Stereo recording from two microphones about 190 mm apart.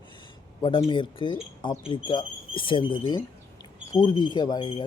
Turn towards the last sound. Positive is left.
turn(degrees=25)  # may be behind; listen again after turning